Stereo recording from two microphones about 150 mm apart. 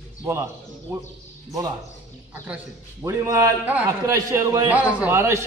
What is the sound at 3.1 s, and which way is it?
A man's voice, 20° right (ahead or behind).